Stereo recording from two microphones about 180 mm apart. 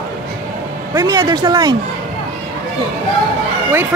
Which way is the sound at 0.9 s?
20° right (ahead or behind).